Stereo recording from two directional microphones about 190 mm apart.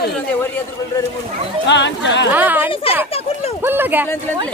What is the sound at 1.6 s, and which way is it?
Speech, 65° left (ahead or behind).